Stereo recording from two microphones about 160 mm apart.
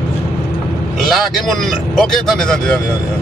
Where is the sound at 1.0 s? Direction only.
Centre (ahead or behind).